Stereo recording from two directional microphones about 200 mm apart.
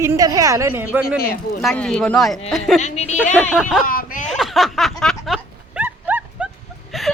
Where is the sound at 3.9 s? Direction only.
45° left (ahead or behind).